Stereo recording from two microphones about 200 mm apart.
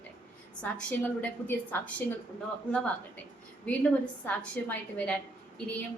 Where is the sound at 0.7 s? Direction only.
5° left (ahead or behind).